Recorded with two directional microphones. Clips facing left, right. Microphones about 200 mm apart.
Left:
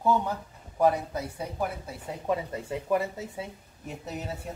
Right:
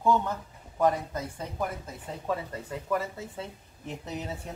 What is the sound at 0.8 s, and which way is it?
Speech, 10° left (ahead or behind).